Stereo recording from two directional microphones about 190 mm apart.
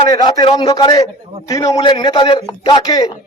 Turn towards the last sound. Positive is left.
turn(degrees=20)  # may be behind; listen again after turning